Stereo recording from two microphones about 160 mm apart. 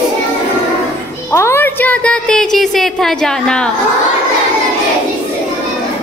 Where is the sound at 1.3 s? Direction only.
15° left (ahead or behind).